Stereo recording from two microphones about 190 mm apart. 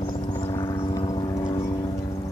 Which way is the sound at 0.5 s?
20° left (ahead or behind).